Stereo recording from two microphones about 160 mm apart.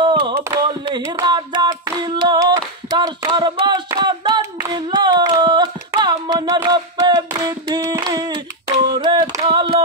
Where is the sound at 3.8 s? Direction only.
25° right (ahead or behind).